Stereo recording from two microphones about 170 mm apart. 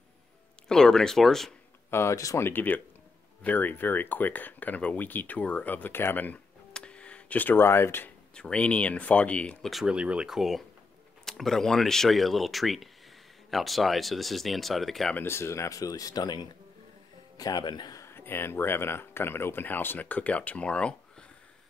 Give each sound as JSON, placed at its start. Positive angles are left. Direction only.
{"t": 0.7, "sound": "speech", "side_deg": 5}
{"t": 1.9, "sound": "speech", "side_deg": 15}
{"t": 15.2, "sound": "speech", "side_deg": 15}